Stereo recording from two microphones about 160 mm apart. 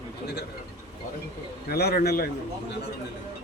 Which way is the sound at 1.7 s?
75° left (ahead or behind).